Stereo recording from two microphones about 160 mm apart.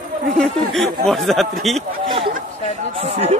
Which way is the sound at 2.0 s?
30° right (ahead or behind).